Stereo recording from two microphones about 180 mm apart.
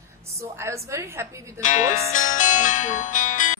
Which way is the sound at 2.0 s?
45° left (ahead or behind).